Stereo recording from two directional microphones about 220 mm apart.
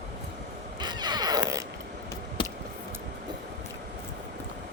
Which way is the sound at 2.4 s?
20° left (ahead or behind).